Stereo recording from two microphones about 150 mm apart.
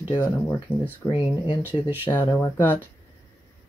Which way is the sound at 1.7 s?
10° right (ahead or behind).